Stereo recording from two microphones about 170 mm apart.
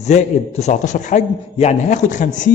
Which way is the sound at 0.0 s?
40° left (ahead or behind).